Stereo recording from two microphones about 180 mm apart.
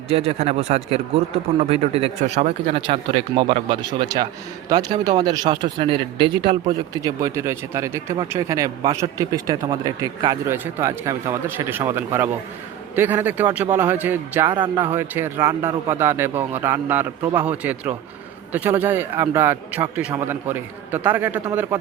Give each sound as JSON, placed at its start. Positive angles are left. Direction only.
{"t": 0.1, "sound": "speech", "side_deg": -35}
{"t": 6.9, "sound": "a man's voice", "side_deg": -15}